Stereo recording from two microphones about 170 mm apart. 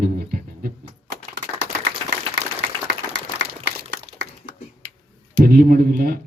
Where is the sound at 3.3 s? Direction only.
90° right.